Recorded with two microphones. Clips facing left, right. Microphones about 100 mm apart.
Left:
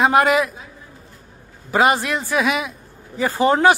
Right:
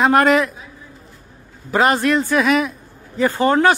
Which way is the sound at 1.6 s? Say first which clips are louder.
Right 1 dB; 5° left (ahead or behind).